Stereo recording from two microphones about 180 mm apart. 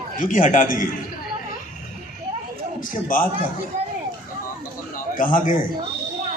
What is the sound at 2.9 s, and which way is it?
Speech, 50° left (ahead or behind).